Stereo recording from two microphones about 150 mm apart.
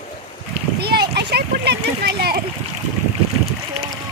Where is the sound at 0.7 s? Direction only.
90° right.